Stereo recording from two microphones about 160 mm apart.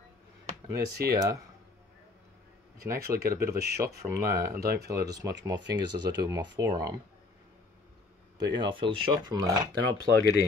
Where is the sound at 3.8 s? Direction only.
20° right (ahead or behind).